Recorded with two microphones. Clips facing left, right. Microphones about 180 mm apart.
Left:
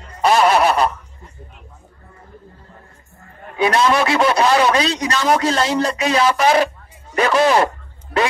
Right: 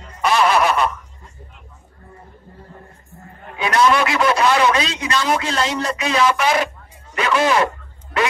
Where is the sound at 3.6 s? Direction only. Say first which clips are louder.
Left 1 dB; 30° left (ahead or behind).